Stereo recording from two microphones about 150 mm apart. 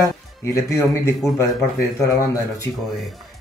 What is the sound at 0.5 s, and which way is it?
Speech, 20° left (ahead or behind).